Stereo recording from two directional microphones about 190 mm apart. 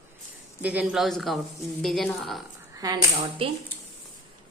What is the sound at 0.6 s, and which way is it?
Speech, 10° right (ahead or behind).